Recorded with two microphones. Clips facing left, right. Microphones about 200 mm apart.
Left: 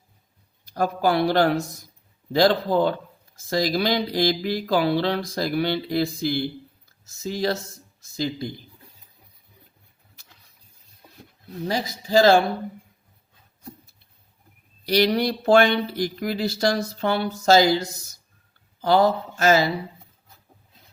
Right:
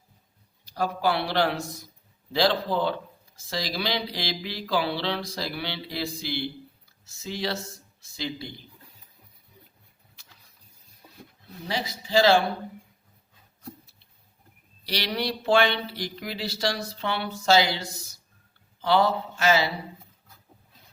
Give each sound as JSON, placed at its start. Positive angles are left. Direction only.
{"t": 0.6, "sound": "speech", "side_deg": 50}
{"t": 11.7, "sound": "speech", "side_deg": 45}
{"t": 14.8, "sound": "speech", "side_deg": 45}